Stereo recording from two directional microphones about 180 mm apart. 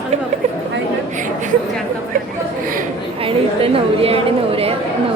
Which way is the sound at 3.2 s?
30° right (ahead or behind).